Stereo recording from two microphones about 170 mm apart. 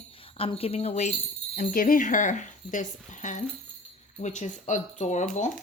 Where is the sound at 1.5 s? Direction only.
55° left (ahead or behind).